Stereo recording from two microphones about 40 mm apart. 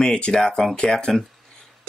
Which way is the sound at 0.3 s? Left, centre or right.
Centre.